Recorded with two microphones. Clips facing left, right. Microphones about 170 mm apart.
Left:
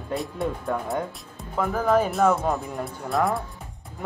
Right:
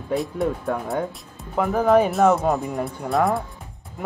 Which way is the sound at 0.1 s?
Centre (ahead or behind).